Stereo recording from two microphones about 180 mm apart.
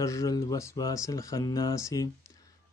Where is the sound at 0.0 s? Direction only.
20° left (ahead or behind).